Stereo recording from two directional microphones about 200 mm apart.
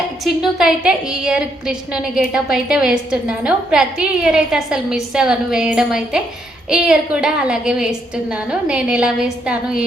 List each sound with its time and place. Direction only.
0.3 s a woman's voice: 5° right (ahead or behind)